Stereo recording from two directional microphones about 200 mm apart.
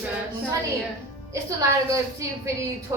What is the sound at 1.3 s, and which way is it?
A woman's voice, 15° right (ahead or behind).